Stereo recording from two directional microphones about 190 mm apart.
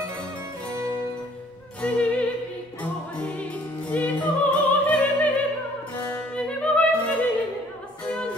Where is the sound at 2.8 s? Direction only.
5° left (ahead or behind).